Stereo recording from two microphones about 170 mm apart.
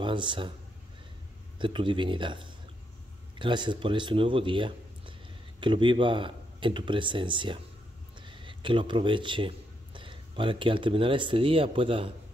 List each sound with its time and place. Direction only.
0.0 s speech: 30° right (ahead or behind)
1.6 s speech: 30° right (ahead or behind)